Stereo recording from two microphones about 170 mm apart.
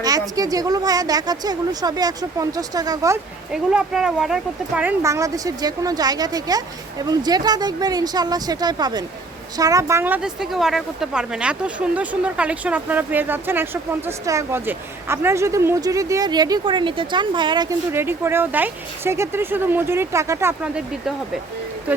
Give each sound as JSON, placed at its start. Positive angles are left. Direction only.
{"t": 0.0, "sound": "a woman's voice", "side_deg": -20}
{"t": 3.5, "sound": "a woman's voice", "side_deg": -5}
{"t": 17.9, "sound": "a woman's voice", "side_deg": -15}